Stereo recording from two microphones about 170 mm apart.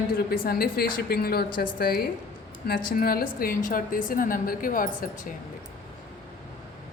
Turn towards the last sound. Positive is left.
turn(degrees=55)  # may be behind; listen again after turning